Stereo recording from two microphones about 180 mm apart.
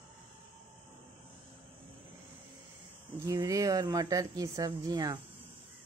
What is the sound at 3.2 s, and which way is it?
Speech, 20° right (ahead or behind).